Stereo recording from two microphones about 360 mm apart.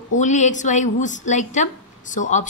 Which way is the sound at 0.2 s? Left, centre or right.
Centre.